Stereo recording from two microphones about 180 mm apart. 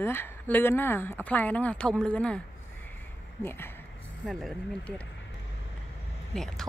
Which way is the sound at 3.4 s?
15° left (ahead or behind).